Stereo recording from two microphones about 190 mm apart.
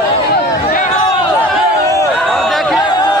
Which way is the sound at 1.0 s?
15° left (ahead or behind).